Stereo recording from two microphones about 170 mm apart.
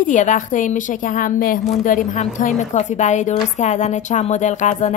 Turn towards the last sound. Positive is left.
turn(degrees=45)  # may be behind; listen again after turning